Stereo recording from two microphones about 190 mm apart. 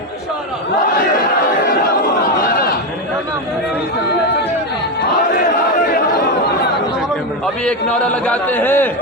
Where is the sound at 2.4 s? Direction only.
50° left (ahead or behind).